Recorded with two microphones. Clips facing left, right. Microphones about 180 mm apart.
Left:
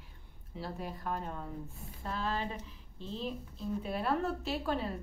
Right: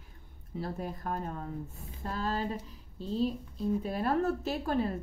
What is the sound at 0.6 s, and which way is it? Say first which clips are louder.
A woman's voice: right 3 dB; 45° right (ahead or behind).